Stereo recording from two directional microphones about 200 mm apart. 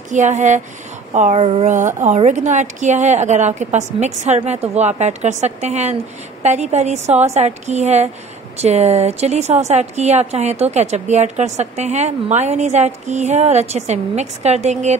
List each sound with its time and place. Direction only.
0.1 s a woman's voice: 35° right (ahead or behind)